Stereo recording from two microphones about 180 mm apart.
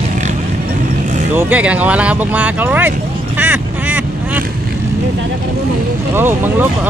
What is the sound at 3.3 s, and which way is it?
Quack, 10° right (ahead or behind).